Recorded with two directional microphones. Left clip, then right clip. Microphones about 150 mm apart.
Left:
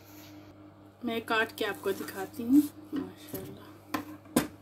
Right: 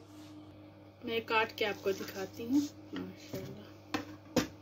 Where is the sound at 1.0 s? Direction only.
65° left (ahead or behind).